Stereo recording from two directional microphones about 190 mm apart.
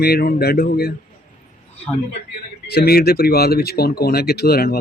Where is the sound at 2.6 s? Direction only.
55° left (ahead or behind).